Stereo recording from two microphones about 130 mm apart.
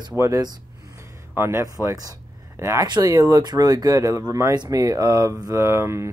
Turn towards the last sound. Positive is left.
turn(degrees=-20)  # may be behind; listen again after turning